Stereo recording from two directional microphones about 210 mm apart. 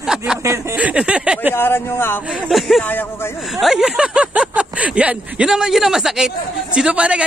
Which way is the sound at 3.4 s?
Centre (ahead or behind).